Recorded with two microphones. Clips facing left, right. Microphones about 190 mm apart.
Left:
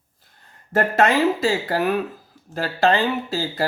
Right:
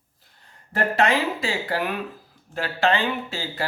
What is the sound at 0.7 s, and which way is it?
Speech, 45° left (ahead or behind).